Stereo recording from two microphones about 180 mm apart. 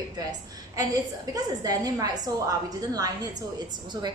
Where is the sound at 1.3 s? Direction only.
20° right (ahead or behind).